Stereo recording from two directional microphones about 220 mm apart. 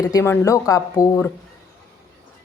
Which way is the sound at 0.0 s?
15° left (ahead or behind).